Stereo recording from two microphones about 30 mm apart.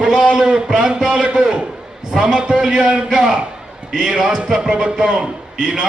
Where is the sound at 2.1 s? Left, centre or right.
Right.